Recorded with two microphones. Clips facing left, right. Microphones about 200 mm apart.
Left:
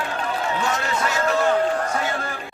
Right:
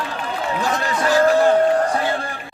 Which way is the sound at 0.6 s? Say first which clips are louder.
Right 2 dB; 35° right (ahead or behind).